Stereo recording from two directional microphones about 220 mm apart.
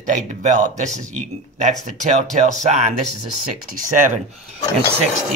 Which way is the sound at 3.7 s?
35° right (ahead or behind).